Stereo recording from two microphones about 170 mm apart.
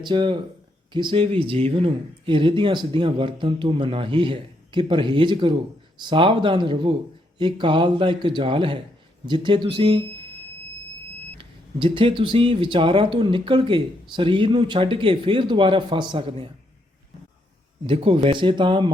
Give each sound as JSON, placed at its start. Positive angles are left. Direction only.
{"t": 0.0, "sound": "speech", "side_deg": -25}
{"t": 11.3, "sound": "speech", "side_deg": -30}
{"t": 17.8, "sound": "speech", "side_deg": -30}